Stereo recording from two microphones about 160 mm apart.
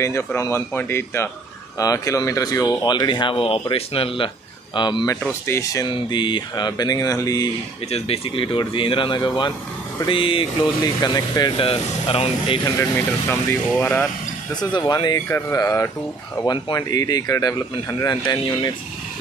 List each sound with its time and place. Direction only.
0.0 s speech: 15° left (ahead or behind)
7.9 s speech: 35° left (ahead or behind)
12.9 s speech: 15° left (ahead or behind)
14.5 s speech: 25° left (ahead or behind)
16.4 s speech: 30° left (ahead or behind)